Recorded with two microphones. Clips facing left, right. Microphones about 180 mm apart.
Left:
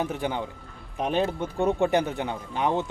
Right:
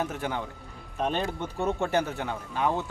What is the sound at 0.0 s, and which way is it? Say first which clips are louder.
Speech: left 3 dB; 15° left (ahead or behind).